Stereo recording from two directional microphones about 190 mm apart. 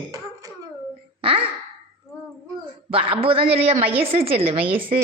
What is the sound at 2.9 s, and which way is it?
A man's voice, 30° right (ahead or behind).